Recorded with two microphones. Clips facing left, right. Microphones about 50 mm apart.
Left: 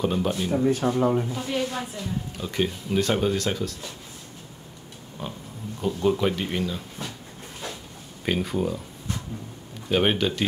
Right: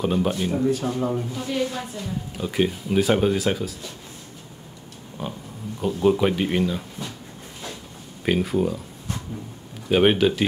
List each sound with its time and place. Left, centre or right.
0.0 s speech: centre
0.7 s speech: left
1.3 s a woman's voice: centre
2.3 s speech: centre
5.2 s speech: centre
8.3 s speech: centre
9.8 s speech: centre